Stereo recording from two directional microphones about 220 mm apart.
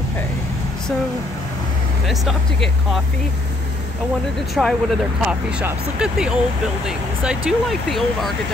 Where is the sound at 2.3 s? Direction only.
Centre (ahead or behind).